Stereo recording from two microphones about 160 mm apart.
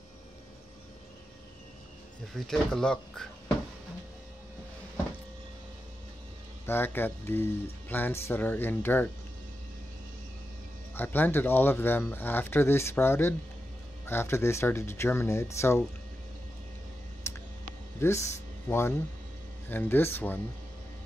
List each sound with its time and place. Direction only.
2.3 s speech: centre (ahead or behind)
6.6 s speech: 15° left (ahead or behind)
11.0 s speech: 10° left (ahead or behind)
17.3 s a sound: 15° left (ahead or behind)
18.0 s speech: 20° left (ahead or behind)